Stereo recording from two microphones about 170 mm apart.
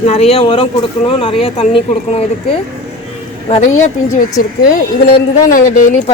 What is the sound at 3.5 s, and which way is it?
Speech, 45° left (ahead or behind).